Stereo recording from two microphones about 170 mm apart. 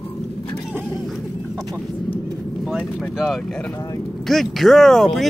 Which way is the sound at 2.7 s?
Centre (ahead or behind).